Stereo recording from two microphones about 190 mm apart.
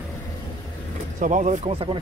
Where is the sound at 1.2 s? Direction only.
40° right (ahead or behind).